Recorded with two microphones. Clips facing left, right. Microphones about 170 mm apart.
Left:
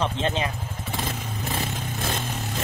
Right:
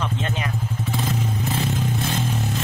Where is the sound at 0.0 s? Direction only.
30° left (ahead or behind).